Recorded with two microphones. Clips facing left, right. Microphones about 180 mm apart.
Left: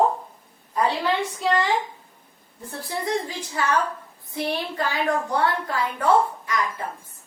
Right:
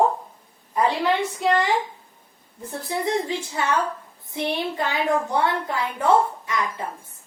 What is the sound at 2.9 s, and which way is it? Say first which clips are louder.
A woman's voice: right 3 dB; 25° right (ahead or behind).